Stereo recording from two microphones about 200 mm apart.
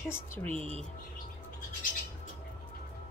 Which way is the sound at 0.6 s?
30° right (ahead or behind).